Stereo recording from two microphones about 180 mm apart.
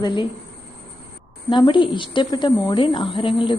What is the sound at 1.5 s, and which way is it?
A woman's voice, 25° left (ahead or behind).